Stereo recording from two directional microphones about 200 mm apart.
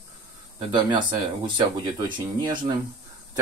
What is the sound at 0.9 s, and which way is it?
Speech, 20° right (ahead or behind).